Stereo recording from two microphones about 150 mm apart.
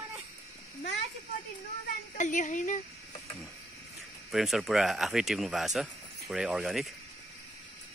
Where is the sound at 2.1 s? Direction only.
55° left (ahead or behind).